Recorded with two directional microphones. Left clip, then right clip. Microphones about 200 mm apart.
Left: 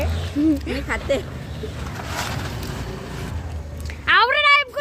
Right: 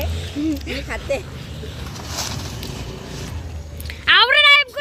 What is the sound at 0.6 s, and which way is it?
Speech, 15° left (ahead or behind).